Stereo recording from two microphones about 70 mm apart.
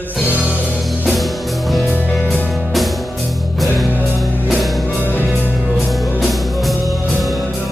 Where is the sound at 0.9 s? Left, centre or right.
Centre.